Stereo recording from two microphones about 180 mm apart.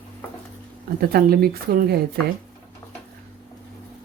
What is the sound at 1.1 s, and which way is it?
Speech, 60° right (ahead or behind).